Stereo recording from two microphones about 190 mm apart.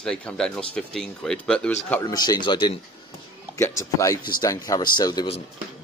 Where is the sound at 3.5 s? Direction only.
15° left (ahead or behind).